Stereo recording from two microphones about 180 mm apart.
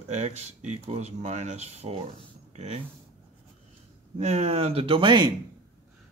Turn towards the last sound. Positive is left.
turn(degrees=-25)  # may be behind; listen again after turning